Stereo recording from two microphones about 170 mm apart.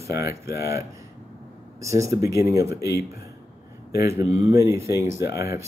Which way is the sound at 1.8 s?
15° right (ahead or behind).